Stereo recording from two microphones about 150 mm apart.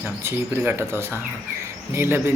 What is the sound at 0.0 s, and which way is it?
Speech, 15° right (ahead or behind).